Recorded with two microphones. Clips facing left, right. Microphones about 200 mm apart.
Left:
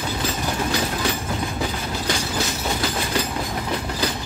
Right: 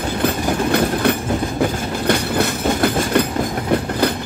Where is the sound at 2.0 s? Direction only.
60° right (ahead or behind).